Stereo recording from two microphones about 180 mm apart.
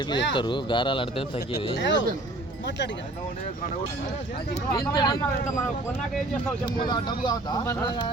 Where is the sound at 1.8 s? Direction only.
85° left.